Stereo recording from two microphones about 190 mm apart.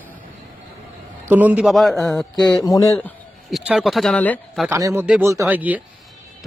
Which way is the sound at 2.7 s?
20° left (ahead or behind).